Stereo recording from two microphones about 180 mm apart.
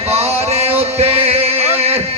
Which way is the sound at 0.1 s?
35° right (ahead or behind).